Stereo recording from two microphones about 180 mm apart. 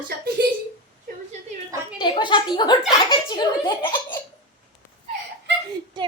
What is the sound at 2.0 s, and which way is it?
A child's voice, 25° left (ahead or behind).